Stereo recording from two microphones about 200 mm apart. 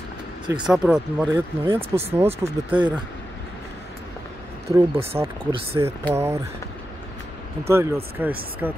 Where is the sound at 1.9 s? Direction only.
20° right (ahead or behind).